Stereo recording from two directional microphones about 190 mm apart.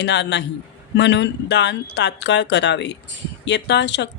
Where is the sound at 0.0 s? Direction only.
65° left (ahead or behind).